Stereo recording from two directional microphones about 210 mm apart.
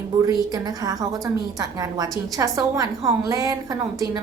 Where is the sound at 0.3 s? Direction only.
20° right (ahead or behind).